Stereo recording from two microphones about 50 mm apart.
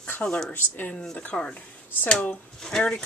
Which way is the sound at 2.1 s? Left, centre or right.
Left.